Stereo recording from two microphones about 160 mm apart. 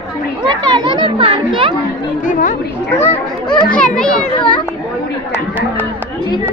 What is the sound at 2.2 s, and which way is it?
Speech, 55° left (ahead or behind).